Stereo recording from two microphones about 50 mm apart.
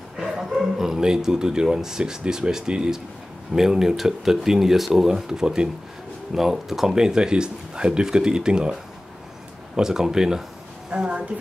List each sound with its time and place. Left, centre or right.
0.2 s speech: centre
9.8 s a woman's voice: centre